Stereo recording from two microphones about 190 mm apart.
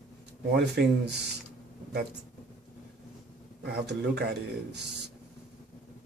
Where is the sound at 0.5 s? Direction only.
60° right (ahead or behind).